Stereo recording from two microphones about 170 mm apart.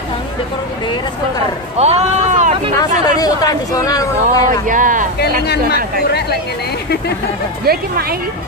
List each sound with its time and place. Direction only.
1.8 s speech: 40° right (ahead or behind)
2.8 s speech: 20° left (ahead or behind)
4.5 s speech: 50° right (ahead or behind)
5.4 s speech: 75° left (ahead or behind)
7.6 s speech: 65° right (ahead or behind)